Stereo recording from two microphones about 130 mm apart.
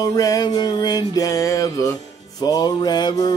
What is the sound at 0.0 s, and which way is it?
Music, 30° left (ahead or behind).